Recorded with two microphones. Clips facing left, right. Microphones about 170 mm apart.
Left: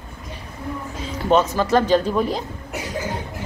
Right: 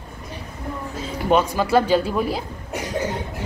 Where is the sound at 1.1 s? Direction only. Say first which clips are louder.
Left 1 dB; 10° right (ahead or behind).